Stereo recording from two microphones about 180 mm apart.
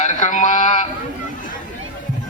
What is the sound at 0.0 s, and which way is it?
Speech, 40° left (ahead or behind).